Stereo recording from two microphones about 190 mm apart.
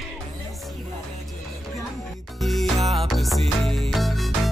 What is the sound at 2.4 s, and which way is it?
Music, centre (ahead or behind).